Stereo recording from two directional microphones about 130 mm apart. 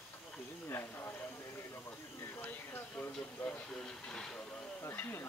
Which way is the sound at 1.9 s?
15° left (ahead or behind).